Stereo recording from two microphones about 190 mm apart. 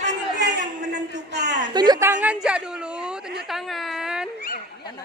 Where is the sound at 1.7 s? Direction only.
20° right (ahead or behind).